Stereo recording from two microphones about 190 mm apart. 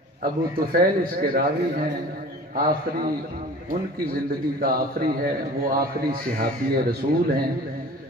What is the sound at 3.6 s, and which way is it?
A man's voice, 50° right (ahead or behind).